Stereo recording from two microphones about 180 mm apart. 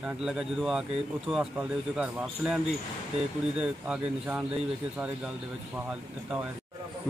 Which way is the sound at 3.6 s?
5° right (ahead or behind).